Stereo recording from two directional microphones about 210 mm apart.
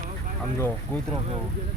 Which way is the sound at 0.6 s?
10° left (ahead or behind).